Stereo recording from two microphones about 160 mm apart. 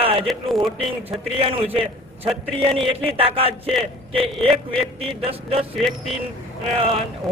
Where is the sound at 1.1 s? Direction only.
35° right (ahead or behind).